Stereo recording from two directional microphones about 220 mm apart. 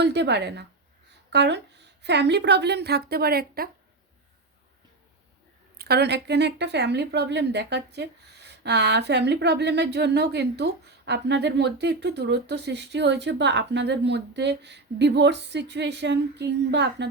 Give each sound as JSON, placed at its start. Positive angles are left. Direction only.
{"t": 0.0, "sound": "a woman's voice", "side_deg": -50}
{"t": 5.7, "sound": "a woman's voice", "side_deg": -45}